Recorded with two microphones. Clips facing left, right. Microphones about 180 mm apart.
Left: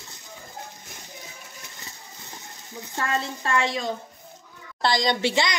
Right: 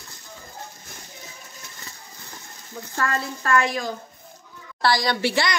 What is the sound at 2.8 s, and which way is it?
A woman's voice, 20° left (ahead or behind).